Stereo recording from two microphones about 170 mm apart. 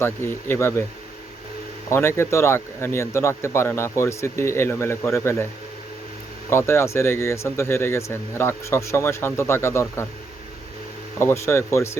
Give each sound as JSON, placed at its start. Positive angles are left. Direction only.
{"t": 0.0, "sound": "speech", "side_deg": 15}
{"t": 1.9, "sound": "speech", "side_deg": 15}
{"t": 6.5, "sound": "speech", "side_deg": 15}
{"t": 11.2, "sound": "speech", "side_deg": 15}